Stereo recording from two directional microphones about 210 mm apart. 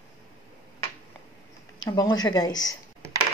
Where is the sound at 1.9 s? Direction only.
20° left (ahead or behind).